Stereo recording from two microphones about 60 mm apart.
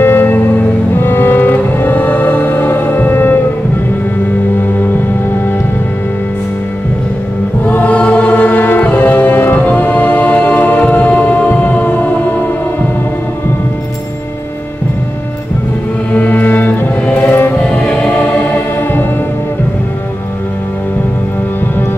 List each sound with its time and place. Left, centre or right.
0.0 s music: left
7.6 s music: left
16.1 s music: left
17.6 s music: left